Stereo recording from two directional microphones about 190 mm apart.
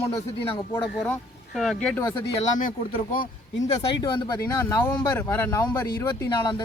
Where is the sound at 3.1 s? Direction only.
45° left (ahead or behind).